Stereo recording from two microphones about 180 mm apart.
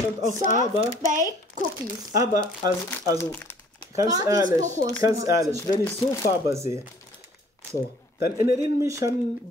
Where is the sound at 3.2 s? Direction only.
10° left (ahead or behind).